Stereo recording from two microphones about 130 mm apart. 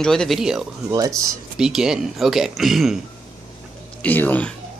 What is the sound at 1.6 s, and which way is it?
Speech, 5° right (ahead or behind).